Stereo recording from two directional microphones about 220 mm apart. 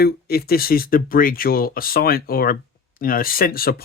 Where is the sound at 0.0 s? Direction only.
45° left (ahead or behind).